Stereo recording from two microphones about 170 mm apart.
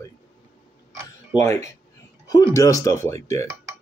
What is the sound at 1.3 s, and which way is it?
Speech, 15° left (ahead or behind).